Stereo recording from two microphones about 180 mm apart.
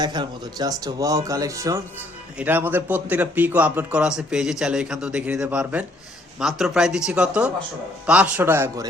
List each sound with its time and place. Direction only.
0.0 s speech: 25° right (ahead or behind)